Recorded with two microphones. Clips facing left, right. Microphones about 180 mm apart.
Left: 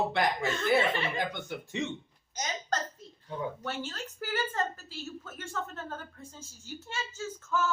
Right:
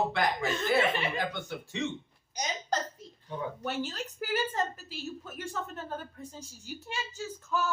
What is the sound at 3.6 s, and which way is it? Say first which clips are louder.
Speech: right 3 dB; 15° right (ahead or behind).